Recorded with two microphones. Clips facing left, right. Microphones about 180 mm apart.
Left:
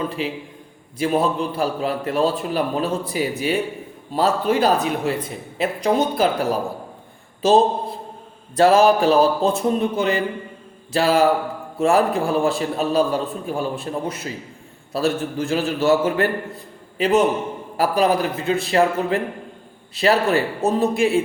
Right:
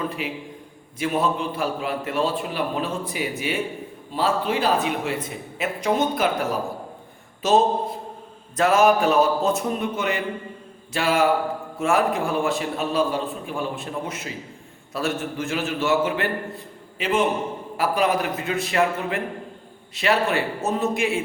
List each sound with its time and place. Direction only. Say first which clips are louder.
0.2 s a man's voice: left 4 dB; 30° left (ahead or behind)